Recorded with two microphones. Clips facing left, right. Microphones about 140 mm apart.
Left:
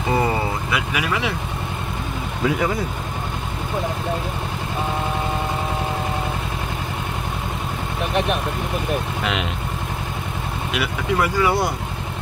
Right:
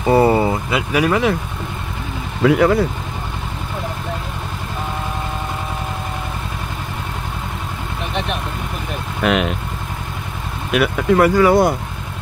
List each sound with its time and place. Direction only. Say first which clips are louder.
0.1 s speech: right 8 dB; 30° right (ahead or behind)
2.4 s speech: right 8 dB; 75° right (ahead or behind)
9.2 s speech: right 7 dB; 55° right (ahead or behind)
10.7 s speech: right 9 dB; 55° right (ahead or behind)